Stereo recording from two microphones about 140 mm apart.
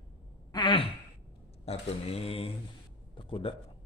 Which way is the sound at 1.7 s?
45° left (ahead or behind).